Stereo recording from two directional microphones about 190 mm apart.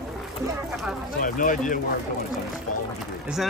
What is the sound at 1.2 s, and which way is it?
Speech, 45° left (ahead or behind).